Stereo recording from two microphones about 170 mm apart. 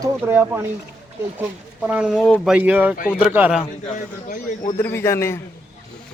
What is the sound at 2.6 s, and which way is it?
Speech, 10° right (ahead or behind).